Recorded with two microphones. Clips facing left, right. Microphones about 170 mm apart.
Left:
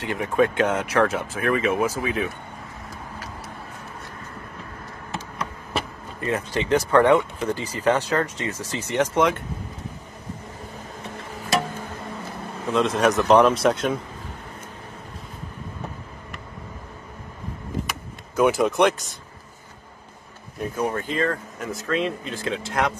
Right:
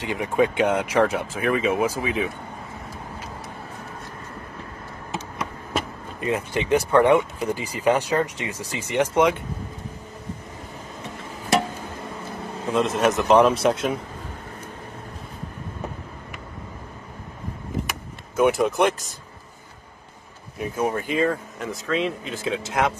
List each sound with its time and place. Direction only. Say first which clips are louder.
0.0 s speech: even; 15° right (ahead or behind)
6.2 s speech: even; 15° right (ahead or behind)
12.7 s speech: left 1 dB; centre (ahead or behind)
18.3 s speech: even; centre (ahead or behind)
20.5 s speech: right 1 dB; 10° right (ahead or behind)